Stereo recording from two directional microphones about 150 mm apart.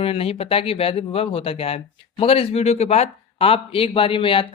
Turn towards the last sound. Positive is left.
turn(degrees=35)  # may be behind; listen again after turning